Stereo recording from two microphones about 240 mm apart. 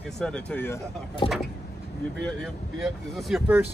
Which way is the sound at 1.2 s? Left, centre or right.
Centre.